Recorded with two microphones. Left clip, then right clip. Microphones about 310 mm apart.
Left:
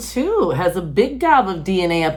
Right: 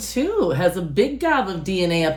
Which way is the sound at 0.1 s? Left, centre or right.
Left.